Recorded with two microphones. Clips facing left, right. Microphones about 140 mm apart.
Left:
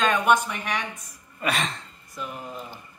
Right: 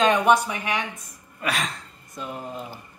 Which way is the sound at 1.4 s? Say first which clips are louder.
Left 1 dB; centre (ahead or behind).